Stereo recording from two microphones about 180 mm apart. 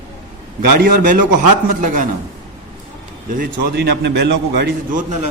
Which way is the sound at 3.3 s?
60° right (ahead or behind).